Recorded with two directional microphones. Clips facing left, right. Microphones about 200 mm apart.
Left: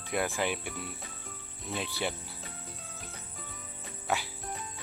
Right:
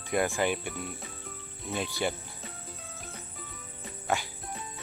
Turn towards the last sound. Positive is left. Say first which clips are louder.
# right 2 dB
turn(degrees=0)  # may be behind; listen again after turning